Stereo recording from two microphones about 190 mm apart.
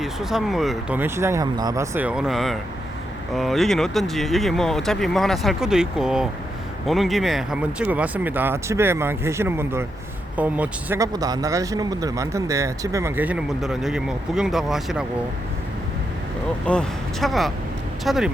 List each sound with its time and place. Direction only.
0.0 s speech: centre (ahead or behind)
16.6 s speech: 5° left (ahead or behind)